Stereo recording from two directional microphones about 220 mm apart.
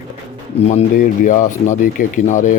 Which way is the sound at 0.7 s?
35° left (ahead or behind).